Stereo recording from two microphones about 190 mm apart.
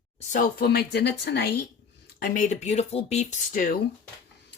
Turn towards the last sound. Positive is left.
turn(degrees=45)  # may be behind; listen again after turning